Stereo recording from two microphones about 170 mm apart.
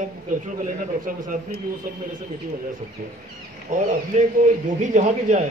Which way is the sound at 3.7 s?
45° right (ahead or behind).